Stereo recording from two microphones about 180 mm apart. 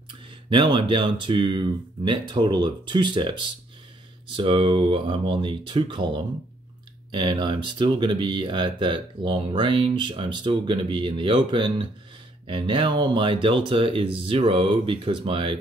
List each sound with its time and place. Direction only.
0.3 s speech: 25° right (ahead or behind)